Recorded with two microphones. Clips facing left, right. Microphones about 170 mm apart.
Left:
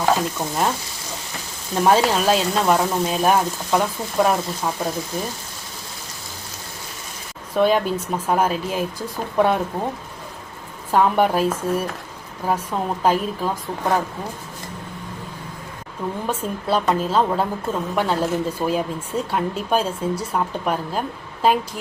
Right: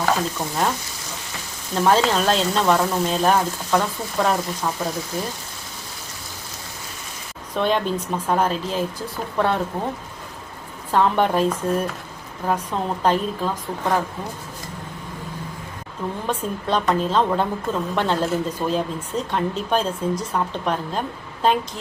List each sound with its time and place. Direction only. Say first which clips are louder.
0.0 s a woman's voice: left 2 dB; 10° left (ahead or behind)
1.7 s a woman's voice: left 1 dB; 15° left (ahead or behind)
7.5 s a woman's voice: left 3 dB; 10° left (ahead or behind)
10.9 s a woman's voice: left 1 dB; 10° left (ahead or behind)
16.2 s a woman's voice: right 1 dB; 5° left (ahead or behind)